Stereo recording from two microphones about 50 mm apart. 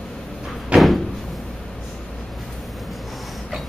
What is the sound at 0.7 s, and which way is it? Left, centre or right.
Door, centre.